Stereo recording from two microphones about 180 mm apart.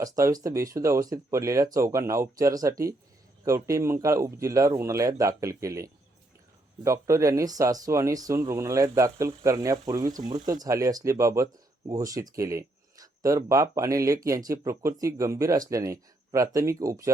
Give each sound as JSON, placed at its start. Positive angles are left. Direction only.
{"t": 0.0, "sound": "speech", "side_deg": -20}